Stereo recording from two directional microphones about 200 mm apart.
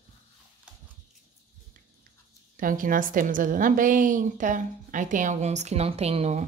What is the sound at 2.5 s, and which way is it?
A woman's voice, 45° right (ahead or behind).